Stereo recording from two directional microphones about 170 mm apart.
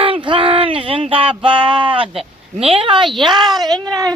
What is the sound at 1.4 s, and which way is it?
Speech, 30° right (ahead or behind).